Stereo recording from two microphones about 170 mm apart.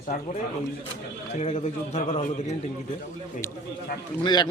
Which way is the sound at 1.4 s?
35° left (ahead or behind).